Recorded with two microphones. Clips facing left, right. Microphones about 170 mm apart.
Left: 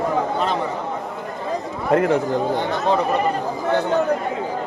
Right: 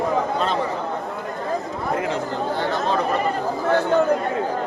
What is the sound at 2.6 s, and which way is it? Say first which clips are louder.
Speech: left 2 dB; 15° left (ahead or behind).